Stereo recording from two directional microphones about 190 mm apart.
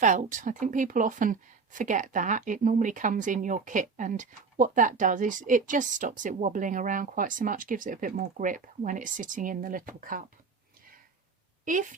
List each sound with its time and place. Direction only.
0.0 s speech: 40° right (ahead or behind)
11.6 s a woman's voice: 45° right (ahead or behind)